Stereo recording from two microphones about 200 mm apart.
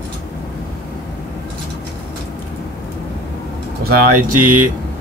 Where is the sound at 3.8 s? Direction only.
45° right (ahead or behind).